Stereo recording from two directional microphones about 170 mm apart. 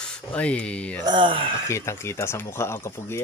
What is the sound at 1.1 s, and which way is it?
Speech, 30° right (ahead or behind).